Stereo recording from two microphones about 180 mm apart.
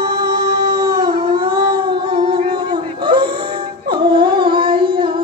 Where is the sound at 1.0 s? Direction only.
20° right (ahead or behind).